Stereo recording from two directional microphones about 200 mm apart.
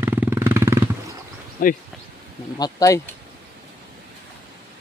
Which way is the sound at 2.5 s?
20° left (ahead or behind).